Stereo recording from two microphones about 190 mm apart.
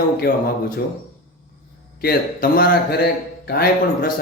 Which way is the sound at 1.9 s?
55° left (ahead or behind).